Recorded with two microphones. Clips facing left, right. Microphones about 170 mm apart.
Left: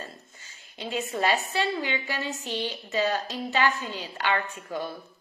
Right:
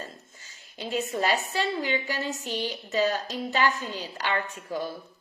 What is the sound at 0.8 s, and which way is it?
A woman's voice, 40° right (ahead or behind).